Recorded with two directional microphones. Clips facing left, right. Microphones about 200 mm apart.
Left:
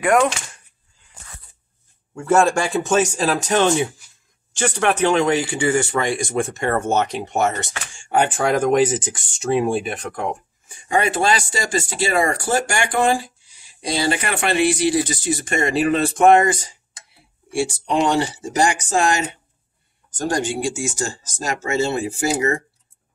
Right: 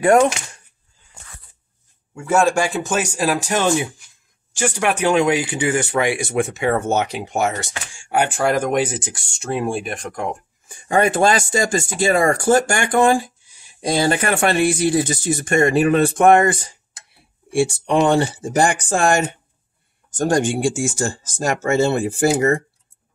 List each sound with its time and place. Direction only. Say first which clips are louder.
0.0 s speech: right 3 dB; 30° right (ahead or behind)
2.1 s speech: even; 5° right (ahead or behind)
5.9 s speech: right 2 dB; 5° right (ahead or behind)
10.9 s speech: right 3 dB; 50° right (ahead or behind)